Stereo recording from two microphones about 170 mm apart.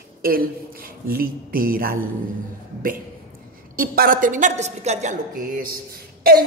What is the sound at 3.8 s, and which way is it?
A woman's voice, 60° right (ahead or behind).